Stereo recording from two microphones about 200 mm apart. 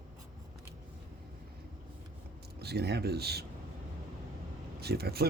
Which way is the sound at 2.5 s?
55° right (ahead or behind).